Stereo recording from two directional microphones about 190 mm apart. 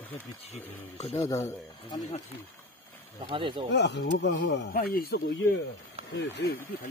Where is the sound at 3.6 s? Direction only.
65° left (ahead or behind).